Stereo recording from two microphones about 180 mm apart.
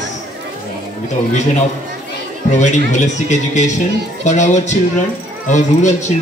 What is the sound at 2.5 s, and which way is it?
A man's voice, 40° left (ahead or behind).